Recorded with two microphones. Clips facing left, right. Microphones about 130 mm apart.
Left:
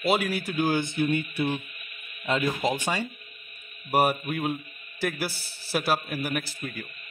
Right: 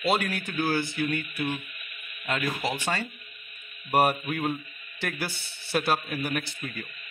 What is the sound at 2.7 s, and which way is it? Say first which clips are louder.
Speech: left 2 dB; 15° left (ahead or behind).